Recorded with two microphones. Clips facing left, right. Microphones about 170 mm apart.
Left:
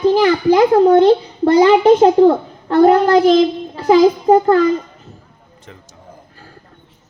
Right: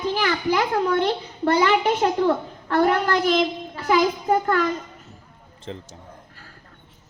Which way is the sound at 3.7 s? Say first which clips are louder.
Left 10 dB; 30° left (ahead or behind).